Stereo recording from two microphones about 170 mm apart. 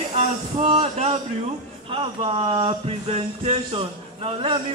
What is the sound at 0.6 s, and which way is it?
Music, 35° right (ahead or behind).